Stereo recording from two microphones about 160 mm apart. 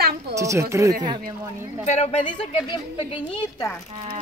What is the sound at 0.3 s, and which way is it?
Speech, 20° right (ahead or behind).